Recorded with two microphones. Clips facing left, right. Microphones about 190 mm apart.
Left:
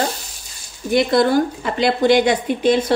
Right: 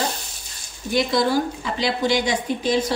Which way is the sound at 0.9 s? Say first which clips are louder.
Left 5 dB; 55° left (ahead or behind).